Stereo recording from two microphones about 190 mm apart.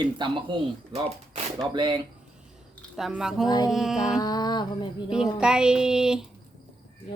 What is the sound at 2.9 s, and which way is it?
Speech, 5° right (ahead or behind).